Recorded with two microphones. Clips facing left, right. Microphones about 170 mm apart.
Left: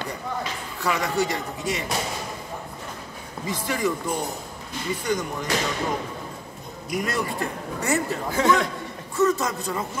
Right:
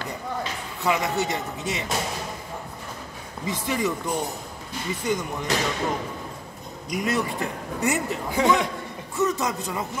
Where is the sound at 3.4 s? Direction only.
20° right (ahead or behind).